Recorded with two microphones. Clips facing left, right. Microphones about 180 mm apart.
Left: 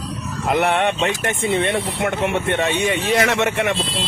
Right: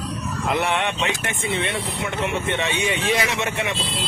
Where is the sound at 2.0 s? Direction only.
60° left (ahead or behind).